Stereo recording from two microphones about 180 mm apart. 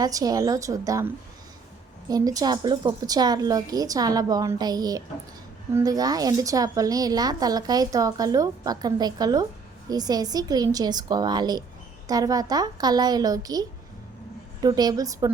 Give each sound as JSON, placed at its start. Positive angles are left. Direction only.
{"t": 0.0, "sound": "a woman's voice", "side_deg": -20}